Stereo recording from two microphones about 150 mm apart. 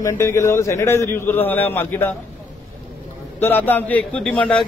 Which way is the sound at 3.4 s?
15° left (ahead or behind).